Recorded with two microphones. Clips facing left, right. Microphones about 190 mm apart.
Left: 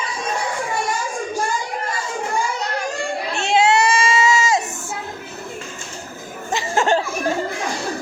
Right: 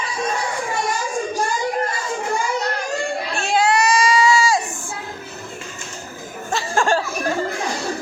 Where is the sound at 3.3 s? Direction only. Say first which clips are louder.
Left 3 dB; 25° left (ahead or behind).